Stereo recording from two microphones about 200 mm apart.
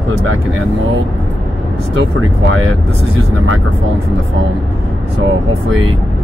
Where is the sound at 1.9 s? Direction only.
75° right (ahead or behind).